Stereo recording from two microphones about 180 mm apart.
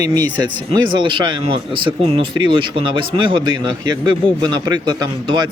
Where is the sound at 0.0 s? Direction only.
20° right (ahead or behind).